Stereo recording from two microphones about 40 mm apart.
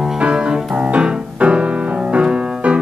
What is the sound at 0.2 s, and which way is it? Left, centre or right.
Music, right.